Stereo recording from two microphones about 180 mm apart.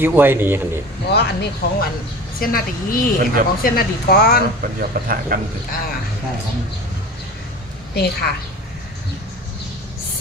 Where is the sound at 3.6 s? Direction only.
55° left (ahead or behind).